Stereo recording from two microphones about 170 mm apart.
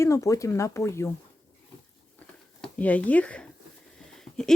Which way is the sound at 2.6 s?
10° left (ahead or behind).